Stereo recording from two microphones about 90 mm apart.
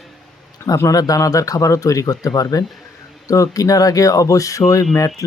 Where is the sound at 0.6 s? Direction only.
35° left (ahead or behind).